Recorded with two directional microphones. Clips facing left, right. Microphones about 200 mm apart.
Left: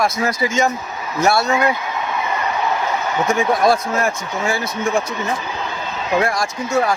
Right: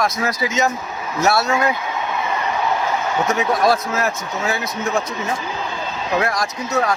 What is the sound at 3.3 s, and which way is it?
Speech, centre (ahead or behind).